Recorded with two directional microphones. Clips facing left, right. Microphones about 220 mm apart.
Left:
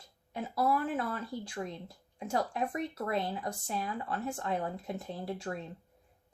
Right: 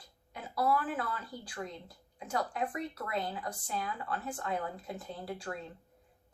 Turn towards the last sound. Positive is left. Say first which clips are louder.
# left 3 dB
turn(degrees=25)  # may be behind; listen again after turning